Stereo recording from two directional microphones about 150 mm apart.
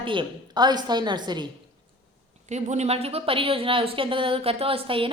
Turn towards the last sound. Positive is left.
turn(degrees=-35)  # may be behind; listen again after turning